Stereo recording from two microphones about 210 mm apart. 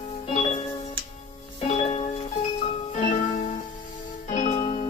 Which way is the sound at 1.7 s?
30° left (ahead or behind).